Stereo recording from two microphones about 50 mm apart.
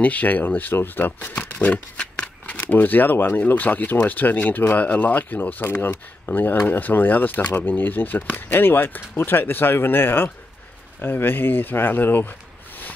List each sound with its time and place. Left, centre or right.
0.0 s speech: left
1.6 s speech: left
5.6 s speech: left